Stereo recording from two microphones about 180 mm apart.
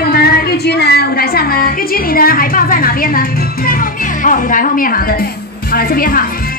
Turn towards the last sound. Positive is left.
turn(degrees=55)  # may be behind; listen again after turning